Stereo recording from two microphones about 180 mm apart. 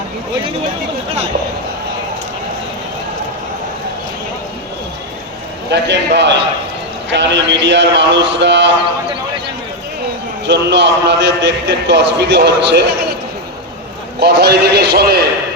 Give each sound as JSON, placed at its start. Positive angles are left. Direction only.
{"t": 5.7, "sound": "a man's voice", "side_deg": -70}
{"t": 10.4, "sound": "a man's voice", "side_deg": -80}
{"t": 14.2, "sound": "a man's voice", "side_deg": -65}